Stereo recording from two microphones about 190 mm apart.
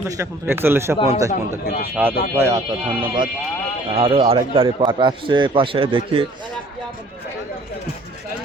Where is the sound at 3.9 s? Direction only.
30° right (ahead or behind).